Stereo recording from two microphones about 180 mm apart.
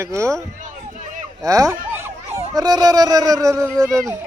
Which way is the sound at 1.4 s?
20° right (ahead or behind).